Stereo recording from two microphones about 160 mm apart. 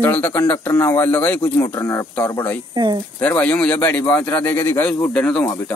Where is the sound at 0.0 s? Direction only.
10° left (ahead or behind).